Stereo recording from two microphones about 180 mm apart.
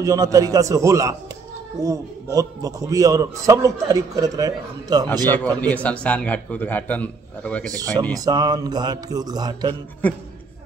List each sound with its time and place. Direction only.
0.0 s a man's voice: 20° right (ahead or behind)
5.3 s speech: 10° left (ahead or behind)
7.7 s a man's voice: 20° right (ahead or behind)